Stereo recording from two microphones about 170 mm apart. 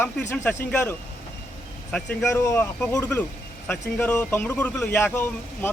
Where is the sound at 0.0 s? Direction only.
10° left (ahead or behind).